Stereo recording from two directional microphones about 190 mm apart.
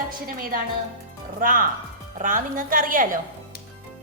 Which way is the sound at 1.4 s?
50° right (ahead or behind).